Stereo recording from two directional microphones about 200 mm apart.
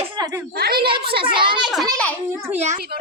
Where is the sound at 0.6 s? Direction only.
50° right (ahead or behind).